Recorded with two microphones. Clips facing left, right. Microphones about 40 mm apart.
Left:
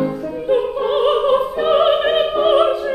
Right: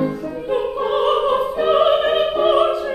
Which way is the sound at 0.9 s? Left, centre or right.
Centre.